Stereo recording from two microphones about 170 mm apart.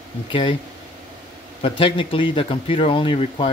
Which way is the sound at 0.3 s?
30° left (ahead or behind).